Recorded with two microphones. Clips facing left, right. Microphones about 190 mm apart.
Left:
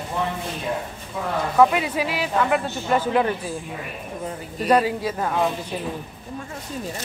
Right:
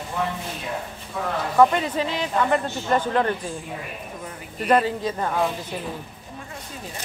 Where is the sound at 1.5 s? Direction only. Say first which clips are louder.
Even; 10° left (ahead or behind).